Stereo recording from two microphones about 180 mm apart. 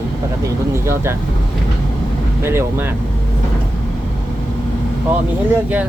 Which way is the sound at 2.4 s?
15° right (ahead or behind).